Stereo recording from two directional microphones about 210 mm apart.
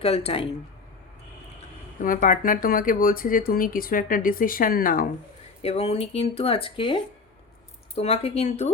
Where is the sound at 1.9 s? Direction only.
40° left (ahead or behind).